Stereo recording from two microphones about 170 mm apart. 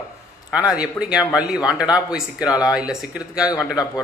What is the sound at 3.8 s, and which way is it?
Speech, 20° left (ahead or behind).